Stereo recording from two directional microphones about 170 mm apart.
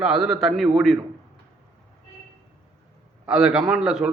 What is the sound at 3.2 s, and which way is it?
Speech, 5° right (ahead or behind).